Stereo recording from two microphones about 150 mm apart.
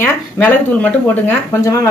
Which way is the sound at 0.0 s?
15° left (ahead or behind).